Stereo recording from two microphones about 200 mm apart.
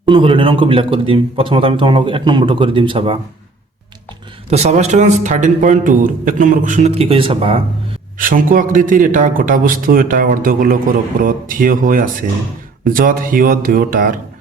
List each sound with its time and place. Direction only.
0.0 s a man's voice: 25° right (ahead or behind)
4.4 s a man's voice: 35° right (ahead or behind)
8.2 s a man's voice: 45° right (ahead or behind)